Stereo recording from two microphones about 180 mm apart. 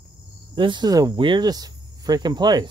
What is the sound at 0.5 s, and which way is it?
Speech, 25° right (ahead or behind).